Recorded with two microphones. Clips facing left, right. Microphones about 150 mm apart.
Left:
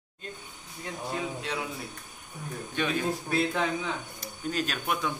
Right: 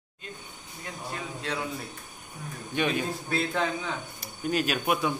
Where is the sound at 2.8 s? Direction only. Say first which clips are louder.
Right 3 dB; 15° right (ahead or behind).